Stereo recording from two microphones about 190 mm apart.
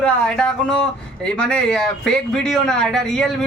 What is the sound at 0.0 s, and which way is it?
Speech, 5° left (ahead or behind).